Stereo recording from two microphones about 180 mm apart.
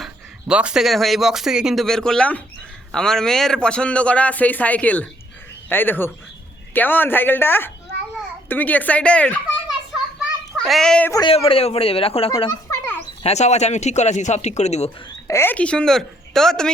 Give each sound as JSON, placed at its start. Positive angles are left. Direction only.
{"t": 0.0, "sound": "a man's voice", "side_deg": -5}
{"t": 11.1, "sound": "speech", "side_deg": 25}
{"t": 15.3, "sound": "speech", "side_deg": 10}